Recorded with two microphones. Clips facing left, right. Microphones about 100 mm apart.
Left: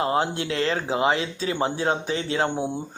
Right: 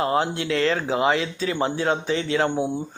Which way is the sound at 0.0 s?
30° left (ahead or behind).